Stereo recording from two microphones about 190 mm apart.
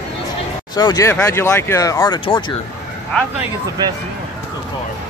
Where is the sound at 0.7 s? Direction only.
20° left (ahead or behind).